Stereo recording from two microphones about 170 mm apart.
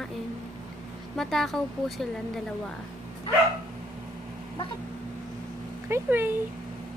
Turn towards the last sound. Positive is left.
turn(degrees=-10)  # may be behind; listen again after turning